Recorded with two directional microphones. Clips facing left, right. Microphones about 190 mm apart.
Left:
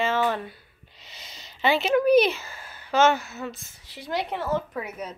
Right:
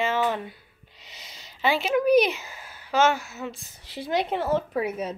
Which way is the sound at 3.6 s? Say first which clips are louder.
Right 5 dB; 20° right (ahead or behind).